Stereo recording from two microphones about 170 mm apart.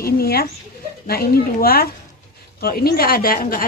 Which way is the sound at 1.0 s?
60° left (ahead or behind).